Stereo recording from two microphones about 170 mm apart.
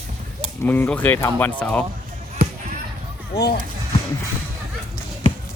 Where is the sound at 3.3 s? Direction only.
75° left (ahead or behind).